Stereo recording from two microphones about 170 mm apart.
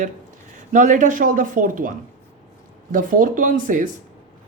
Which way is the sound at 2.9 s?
50° right (ahead or behind).